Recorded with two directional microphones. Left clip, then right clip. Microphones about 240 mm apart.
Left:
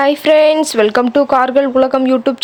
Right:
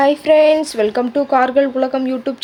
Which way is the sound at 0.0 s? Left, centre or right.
Left.